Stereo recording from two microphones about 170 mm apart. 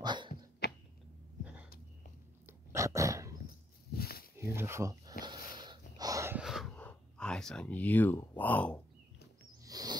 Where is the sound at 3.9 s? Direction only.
65° left (ahead or behind).